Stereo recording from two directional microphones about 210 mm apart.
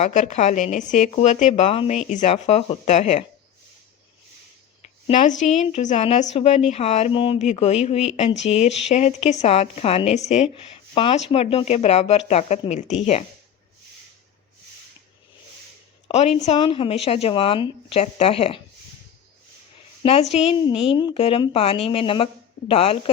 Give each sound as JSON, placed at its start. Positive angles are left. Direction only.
{"t": 0.0, "sound": "speech", "side_deg": 35}
{"t": 5.0, "sound": "speech", "side_deg": 35}
{"t": 16.0, "sound": "speech", "side_deg": 30}
{"t": 20.0, "sound": "speech", "side_deg": 30}